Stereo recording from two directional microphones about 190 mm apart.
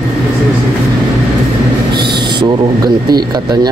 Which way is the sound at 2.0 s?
60° right (ahead or behind).